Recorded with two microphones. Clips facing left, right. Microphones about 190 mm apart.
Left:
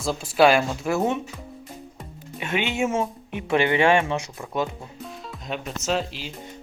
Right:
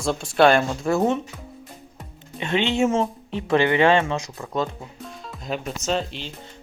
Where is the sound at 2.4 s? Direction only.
10° left (ahead or behind).